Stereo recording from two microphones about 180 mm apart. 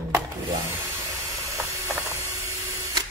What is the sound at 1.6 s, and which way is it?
Ratchet, 15° right (ahead or behind).